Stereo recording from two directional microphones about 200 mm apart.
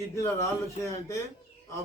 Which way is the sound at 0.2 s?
15° left (ahead or behind).